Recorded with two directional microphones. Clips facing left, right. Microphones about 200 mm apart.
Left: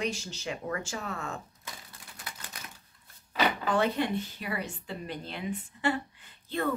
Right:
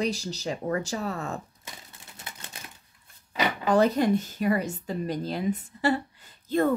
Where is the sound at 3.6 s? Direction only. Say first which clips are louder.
Right 10 dB; 40° right (ahead or behind).